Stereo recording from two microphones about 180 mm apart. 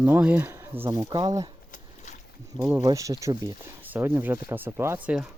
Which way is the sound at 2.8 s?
20° right (ahead or behind).